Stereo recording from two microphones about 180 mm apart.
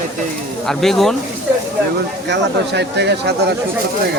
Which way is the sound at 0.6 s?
Centre (ahead or behind).